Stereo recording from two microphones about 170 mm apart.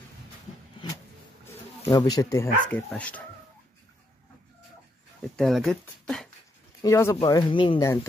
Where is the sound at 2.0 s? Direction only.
20° left (ahead or behind).